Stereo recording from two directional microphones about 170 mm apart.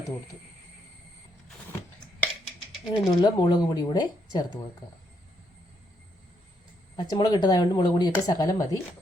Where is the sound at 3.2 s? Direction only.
25° left (ahead or behind).